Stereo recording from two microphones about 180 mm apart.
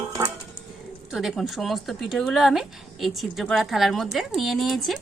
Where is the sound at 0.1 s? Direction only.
15° right (ahead or behind).